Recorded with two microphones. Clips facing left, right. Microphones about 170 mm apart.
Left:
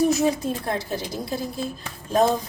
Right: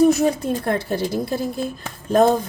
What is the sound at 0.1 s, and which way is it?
Speech, 55° right (ahead or behind).